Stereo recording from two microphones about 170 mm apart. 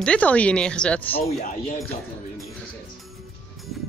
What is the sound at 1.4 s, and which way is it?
Speech, 50° left (ahead or behind).